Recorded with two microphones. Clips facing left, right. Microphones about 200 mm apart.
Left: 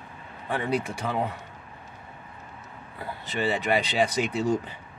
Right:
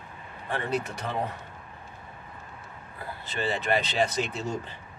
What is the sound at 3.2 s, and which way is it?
Speech, 15° left (ahead or behind).